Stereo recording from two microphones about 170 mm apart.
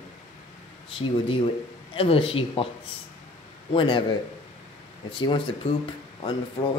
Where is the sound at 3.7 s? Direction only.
30° left (ahead or behind).